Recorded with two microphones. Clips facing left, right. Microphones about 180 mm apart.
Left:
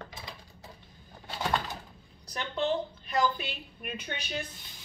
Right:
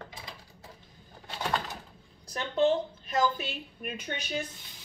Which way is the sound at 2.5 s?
45° right (ahead or behind).